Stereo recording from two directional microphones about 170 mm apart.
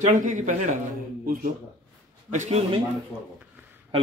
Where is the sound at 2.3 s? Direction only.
40° right (ahead or behind).